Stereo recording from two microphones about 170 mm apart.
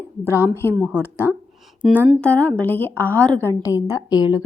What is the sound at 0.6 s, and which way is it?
Speech, 10° left (ahead or behind).